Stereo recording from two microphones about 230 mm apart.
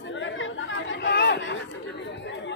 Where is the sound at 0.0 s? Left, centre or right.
Left.